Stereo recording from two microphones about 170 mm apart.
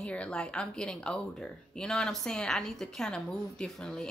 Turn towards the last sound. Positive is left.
turn(degrees=5)  # may be behind; listen again after turning